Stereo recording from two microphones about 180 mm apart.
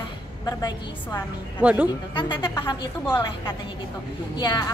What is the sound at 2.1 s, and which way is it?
Speech, 25° left (ahead or behind).